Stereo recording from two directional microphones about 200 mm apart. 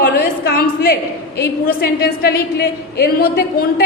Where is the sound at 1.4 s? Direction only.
50° left (ahead or behind).